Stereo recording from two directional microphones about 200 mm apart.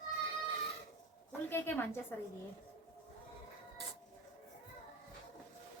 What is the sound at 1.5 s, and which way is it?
Speech, 10° left (ahead or behind).